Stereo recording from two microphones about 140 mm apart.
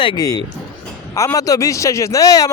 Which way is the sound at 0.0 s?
30° left (ahead or behind).